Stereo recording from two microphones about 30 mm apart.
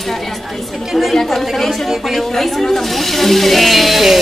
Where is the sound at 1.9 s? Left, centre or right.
Centre.